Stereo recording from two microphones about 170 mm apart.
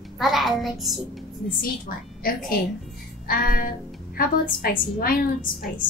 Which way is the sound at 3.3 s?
60° left (ahead or behind).